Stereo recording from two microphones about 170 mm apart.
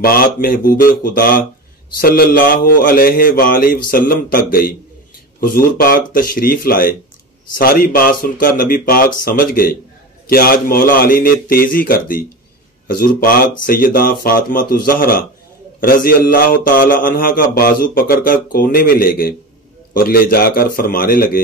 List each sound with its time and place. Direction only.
0.0 s mantra: 60° left (ahead or behind)